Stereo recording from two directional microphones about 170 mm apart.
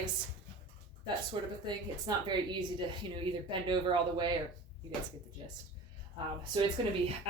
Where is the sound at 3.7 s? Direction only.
25° right (ahead or behind).